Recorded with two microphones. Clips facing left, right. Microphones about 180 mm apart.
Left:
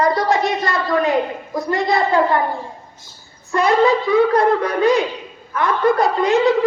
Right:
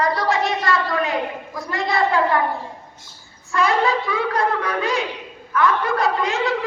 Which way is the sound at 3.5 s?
40° left (ahead or behind).